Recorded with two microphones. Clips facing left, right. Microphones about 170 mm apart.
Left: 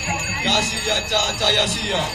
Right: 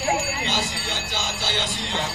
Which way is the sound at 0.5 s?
90° left.